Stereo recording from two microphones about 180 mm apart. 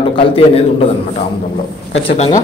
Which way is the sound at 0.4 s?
30° left (ahead or behind).